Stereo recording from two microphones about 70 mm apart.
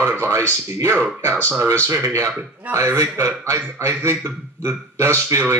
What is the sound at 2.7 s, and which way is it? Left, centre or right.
Speech, right.